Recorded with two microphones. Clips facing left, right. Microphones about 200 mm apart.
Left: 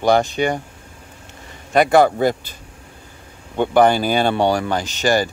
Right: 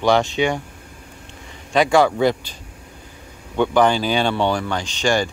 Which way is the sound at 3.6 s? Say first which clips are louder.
Left 2 dB; 55° left (ahead or behind).